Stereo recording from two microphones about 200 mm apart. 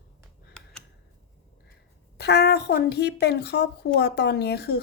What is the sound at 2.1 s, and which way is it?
Speech, 55° left (ahead or behind).